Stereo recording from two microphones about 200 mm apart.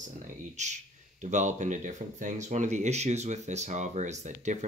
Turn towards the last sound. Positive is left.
turn(degrees=-35)  # may be behind; listen again after turning